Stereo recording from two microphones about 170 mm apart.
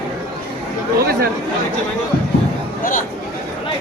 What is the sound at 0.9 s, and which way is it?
Chatter, 65° right (ahead or behind).